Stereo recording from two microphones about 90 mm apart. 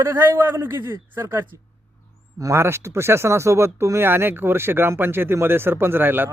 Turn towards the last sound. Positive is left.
turn(degrees=-25)  # may be behind; listen again after turning